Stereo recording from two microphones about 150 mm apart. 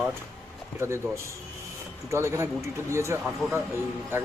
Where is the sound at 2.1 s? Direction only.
20° right (ahead or behind).